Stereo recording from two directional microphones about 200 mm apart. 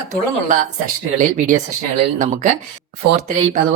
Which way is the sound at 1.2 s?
40° right (ahead or behind).